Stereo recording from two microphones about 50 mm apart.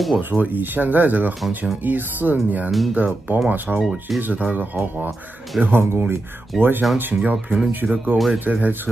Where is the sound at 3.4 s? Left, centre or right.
Right.